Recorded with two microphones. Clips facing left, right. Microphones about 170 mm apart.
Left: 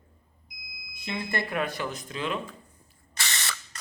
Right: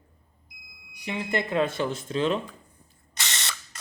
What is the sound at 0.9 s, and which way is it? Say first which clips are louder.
Speech: right 3 dB; 15° right (ahead or behind).